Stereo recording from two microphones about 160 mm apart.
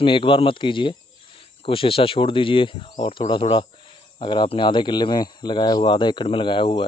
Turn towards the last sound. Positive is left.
turn(degrees=30)  # may be behind; listen again after turning